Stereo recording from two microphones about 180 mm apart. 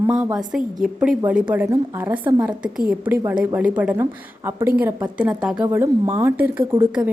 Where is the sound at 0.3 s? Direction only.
5° right (ahead or behind).